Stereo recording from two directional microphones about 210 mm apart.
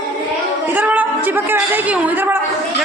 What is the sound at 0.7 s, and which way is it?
A woman's voice, 10° right (ahead or behind).